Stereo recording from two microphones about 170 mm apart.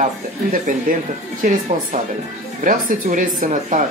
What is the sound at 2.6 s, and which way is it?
Speech, 50° right (ahead or behind).